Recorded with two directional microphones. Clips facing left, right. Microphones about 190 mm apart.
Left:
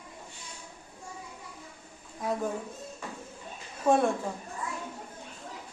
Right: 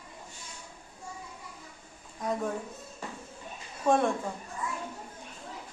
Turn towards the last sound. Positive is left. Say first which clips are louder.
# left 1 dB
turn(degrees=5)  # may be behind; listen again after turning